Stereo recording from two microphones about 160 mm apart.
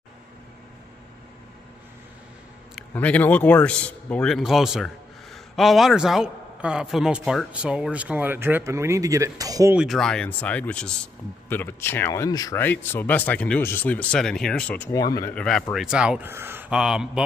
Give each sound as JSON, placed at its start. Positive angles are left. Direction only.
{"t": 2.9, "sound": "a man's voice", "side_deg": 10}
{"t": 9.8, "sound": "speech", "side_deg": 0}
{"t": 14.9, "sound": "speech", "side_deg": 25}
{"t": 15.3, "sound": "a man's voice", "side_deg": 5}